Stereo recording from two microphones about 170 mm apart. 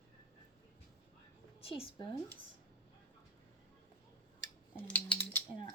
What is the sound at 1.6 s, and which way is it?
Speech, 35° left (ahead or behind).